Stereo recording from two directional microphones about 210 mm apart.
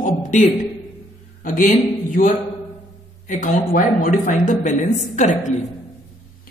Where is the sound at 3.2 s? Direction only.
40° left (ahead or behind).